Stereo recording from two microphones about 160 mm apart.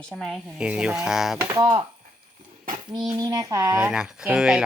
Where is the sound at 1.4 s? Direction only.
20° right (ahead or behind).